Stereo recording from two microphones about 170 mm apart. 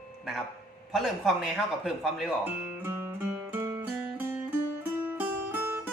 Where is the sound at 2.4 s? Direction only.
10° right (ahead or behind).